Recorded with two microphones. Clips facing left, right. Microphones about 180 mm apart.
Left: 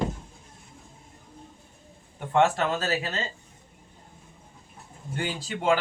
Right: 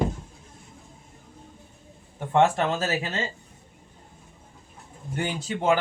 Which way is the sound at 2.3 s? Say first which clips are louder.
Right 2 dB; 25° right (ahead or behind).